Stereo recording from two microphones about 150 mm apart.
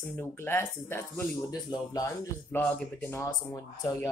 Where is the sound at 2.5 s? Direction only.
10° left (ahead or behind).